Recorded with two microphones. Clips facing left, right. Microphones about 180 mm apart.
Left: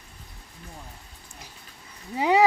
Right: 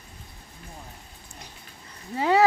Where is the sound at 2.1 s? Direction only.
15° left (ahead or behind).